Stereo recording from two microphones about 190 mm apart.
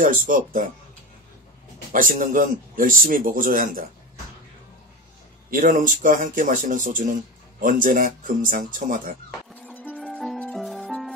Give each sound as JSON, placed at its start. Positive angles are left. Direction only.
{"t": 0.0, "sound": "a man's voice", "side_deg": -45}
{"t": 1.9, "sound": "a man's voice", "side_deg": -45}
{"t": 5.5, "sound": "a man's voice", "side_deg": -45}
{"t": 9.6, "sound": "music", "side_deg": 10}